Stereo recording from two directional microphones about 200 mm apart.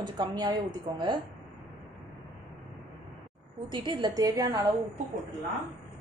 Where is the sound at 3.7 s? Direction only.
25° right (ahead or behind).